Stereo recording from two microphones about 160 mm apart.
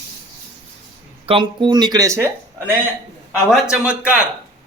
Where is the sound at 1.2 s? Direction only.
30° right (ahead or behind).